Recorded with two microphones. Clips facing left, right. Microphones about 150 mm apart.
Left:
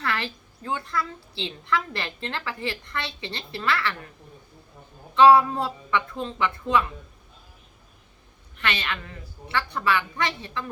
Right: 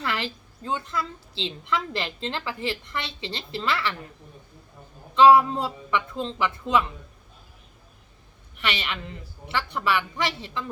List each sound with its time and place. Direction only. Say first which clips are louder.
0.0 s a woman's voice: even; 20° right (ahead or behind)
5.2 s a woman's voice: even; 15° right (ahead or behind)
8.5 s a woman's voice: left 1 dB; 20° right (ahead or behind)